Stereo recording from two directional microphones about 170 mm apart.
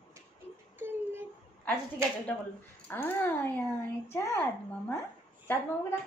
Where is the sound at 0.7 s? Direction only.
15° right (ahead or behind).